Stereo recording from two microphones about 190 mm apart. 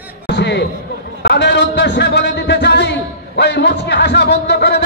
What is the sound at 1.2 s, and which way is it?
A man's voice, 60° left (ahead or behind).